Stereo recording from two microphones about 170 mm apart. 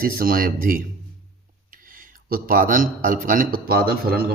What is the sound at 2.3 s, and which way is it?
A man's voice, 55° right (ahead or behind).